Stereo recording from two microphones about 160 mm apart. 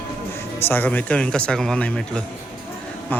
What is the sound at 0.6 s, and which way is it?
Speech, 15° left (ahead or behind).